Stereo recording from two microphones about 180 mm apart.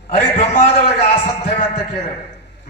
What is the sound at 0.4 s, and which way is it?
A man's voice, 35° left (ahead or behind).